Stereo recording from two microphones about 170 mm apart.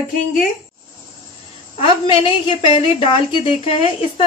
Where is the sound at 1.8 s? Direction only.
30° left (ahead or behind).